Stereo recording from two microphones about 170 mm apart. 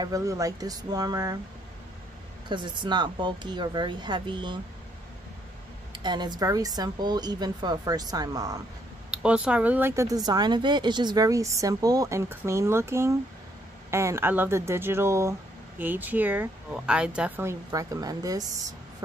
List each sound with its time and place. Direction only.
0.0 s speech: 20° right (ahead or behind)
2.5 s speech: 25° right (ahead or behind)
6.0 s speech: 25° right (ahead or behind)
9.1 s speech: 5° right (ahead or behind)
17.6 s speech: 20° right (ahead or behind)